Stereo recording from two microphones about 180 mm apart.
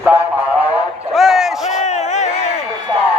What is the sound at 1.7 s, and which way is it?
Crowd, 40° left (ahead or behind).